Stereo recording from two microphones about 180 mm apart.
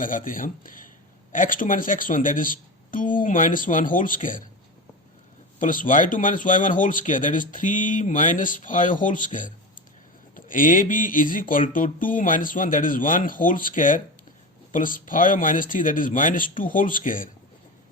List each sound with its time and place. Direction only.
0.3 s speech: 50° left (ahead or behind)
5.5 s speech: 45° left (ahead or behind)